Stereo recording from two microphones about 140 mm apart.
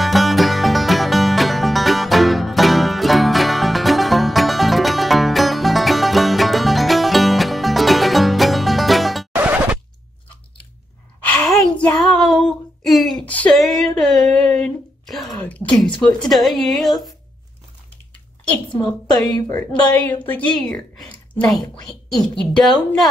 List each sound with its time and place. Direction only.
0.0 s music: centre (ahead or behind)
9.3 s music: 10° right (ahead or behind)
11.2 s gasp: 5° left (ahead or behind)
12.0 s a sound: centre (ahead or behind)
13.5 s a sound: centre (ahead or behind)
15.4 s speech: 10° left (ahead or behind)
19.2 s a woman's voice: 30° left (ahead or behind)
19.7 s a woman's voice: 10° left (ahead or behind)